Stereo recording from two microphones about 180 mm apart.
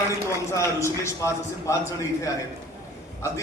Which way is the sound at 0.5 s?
15° left (ahead or behind).